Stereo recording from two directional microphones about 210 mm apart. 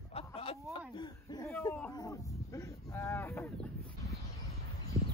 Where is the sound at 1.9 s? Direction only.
15° left (ahead or behind).